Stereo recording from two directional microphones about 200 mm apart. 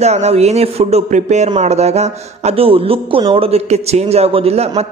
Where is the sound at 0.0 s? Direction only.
35° right (ahead or behind).